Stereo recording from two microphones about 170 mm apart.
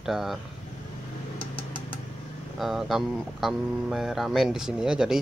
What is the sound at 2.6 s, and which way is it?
Speech, centre (ahead or behind).